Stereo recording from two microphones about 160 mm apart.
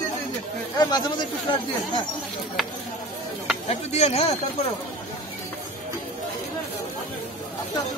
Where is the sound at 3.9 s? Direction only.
40° left (ahead or behind).